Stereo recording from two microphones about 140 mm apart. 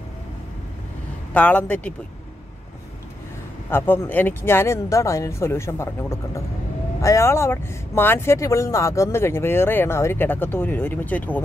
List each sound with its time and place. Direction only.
1.3 s speech: 10° left (ahead or behind)
3.7 s speech: 15° left (ahead or behind)